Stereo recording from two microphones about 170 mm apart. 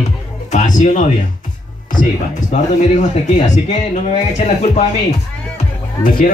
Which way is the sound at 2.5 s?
45° left (ahead or behind).